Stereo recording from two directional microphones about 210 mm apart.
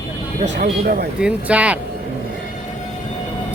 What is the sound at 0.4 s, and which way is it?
Speech, 40° right (ahead or behind).